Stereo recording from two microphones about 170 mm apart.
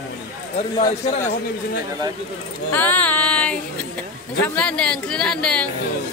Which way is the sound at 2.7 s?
10° left (ahead or behind).